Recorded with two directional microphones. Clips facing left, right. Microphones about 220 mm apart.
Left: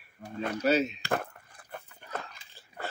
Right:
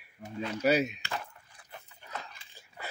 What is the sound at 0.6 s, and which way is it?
Speech, 15° right (ahead or behind).